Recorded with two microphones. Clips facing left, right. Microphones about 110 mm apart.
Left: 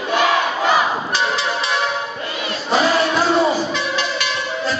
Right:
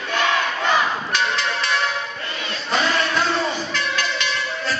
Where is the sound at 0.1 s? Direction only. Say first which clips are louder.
Left 4 dB; 10° left (ahead or behind).